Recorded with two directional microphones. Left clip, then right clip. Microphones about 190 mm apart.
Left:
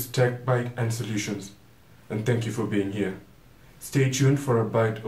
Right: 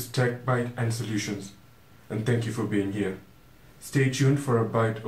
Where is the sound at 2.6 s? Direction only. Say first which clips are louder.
Left 1 dB; 20° left (ahead or behind).